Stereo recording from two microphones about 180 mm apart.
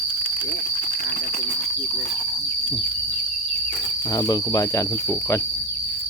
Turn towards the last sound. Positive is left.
turn(degrees=20)  # may be behind; listen again after turning